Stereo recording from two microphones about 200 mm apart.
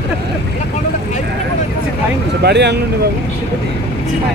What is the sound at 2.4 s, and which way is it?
Speech, 55° right (ahead or behind).